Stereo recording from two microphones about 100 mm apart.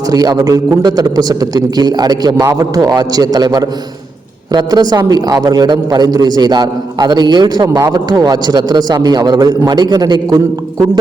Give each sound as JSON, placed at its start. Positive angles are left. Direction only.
{"t": 0.1, "sound": "a man's voice", "side_deg": -40}